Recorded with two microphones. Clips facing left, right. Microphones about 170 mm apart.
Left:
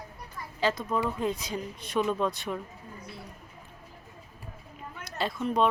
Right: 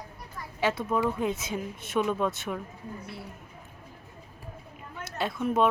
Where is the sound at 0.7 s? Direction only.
5° right (ahead or behind).